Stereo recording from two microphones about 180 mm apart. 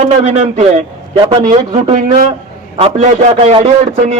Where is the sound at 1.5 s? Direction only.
45° right (ahead or behind).